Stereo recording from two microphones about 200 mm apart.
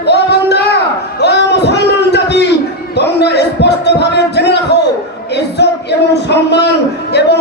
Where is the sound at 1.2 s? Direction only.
55° left (ahead or behind).